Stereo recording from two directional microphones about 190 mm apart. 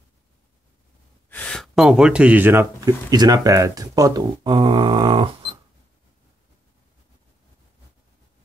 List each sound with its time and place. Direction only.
1.3 s speech: 5° left (ahead or behind); by 5.6 s 25° right (ahead or behind)